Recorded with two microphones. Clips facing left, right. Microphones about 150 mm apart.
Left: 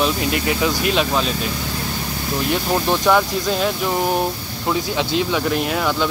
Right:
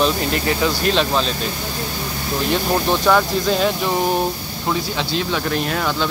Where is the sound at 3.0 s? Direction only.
5° left (ahead or behind).